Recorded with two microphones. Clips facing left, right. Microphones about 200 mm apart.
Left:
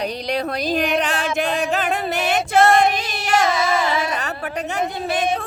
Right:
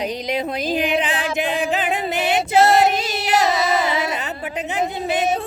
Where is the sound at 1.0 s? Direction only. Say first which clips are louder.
Left 1 dB; 15° right (ahead or behind).